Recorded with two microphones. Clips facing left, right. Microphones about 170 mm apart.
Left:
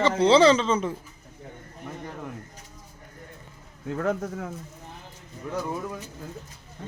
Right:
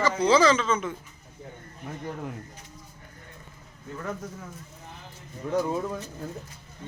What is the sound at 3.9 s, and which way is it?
Speech, 70° left (ahead or behind).